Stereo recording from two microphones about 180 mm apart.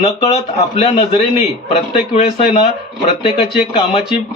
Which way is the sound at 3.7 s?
35° left (ahead or behind).